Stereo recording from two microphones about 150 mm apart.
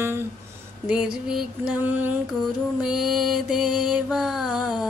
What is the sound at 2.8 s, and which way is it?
Mantra, 5° right (ahead or behind).